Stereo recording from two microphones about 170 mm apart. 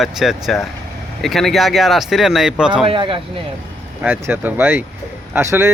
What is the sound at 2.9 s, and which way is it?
Speech, 30° right (ahead or behind).